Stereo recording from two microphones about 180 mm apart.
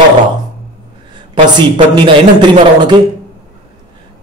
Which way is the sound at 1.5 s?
25° right (ahead or behind).